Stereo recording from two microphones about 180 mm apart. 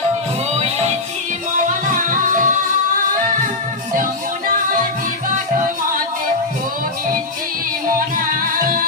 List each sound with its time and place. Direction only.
2.0 s music: 45° right (ahead or behind)